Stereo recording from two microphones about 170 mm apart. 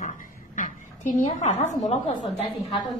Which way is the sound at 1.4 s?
40° left (ahead or behind).